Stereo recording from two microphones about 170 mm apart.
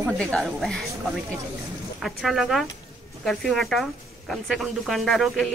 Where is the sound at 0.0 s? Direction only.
Centre (ahead or behind).